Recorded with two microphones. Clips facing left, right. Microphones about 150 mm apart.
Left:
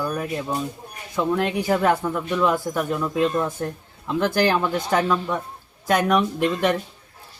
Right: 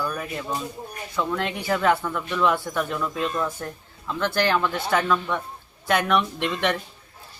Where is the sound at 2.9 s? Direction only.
20° left (ahead or behind).